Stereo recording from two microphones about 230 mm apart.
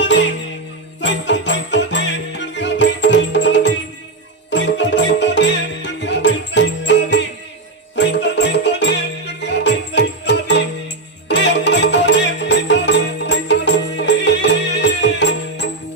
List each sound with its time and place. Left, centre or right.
0.0 s music: left